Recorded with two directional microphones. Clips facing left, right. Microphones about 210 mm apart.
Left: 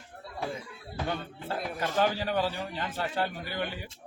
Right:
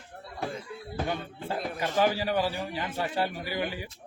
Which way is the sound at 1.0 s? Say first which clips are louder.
Left 1 dB; 10° right (ahead or behind).